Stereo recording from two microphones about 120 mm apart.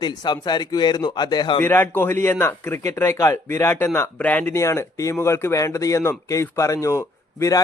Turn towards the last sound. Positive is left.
turn(degrees=25)  # may be behind; listen again after turning